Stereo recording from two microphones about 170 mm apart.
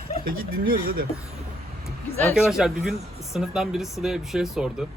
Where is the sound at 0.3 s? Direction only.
60° right (ahead or behind).